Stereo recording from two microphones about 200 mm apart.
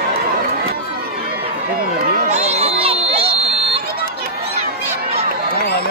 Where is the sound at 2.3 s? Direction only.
35° right (ahead or behind).